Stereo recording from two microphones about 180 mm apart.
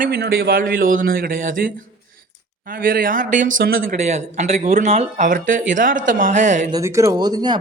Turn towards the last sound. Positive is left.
turn(degrees=-25)  # may be behind; listen again after turning